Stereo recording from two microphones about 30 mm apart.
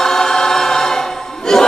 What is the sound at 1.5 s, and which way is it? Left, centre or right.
Chant, centre.